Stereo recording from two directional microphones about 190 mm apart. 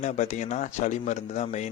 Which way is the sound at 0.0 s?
40° left (ahead or behind).